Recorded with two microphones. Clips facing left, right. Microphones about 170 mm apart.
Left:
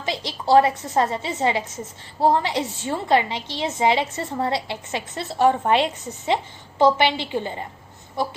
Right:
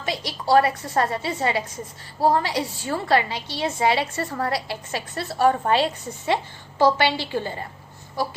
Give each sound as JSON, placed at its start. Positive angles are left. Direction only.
{"t": 0.0, "sound": "a woman's voice", "side_deg": 25}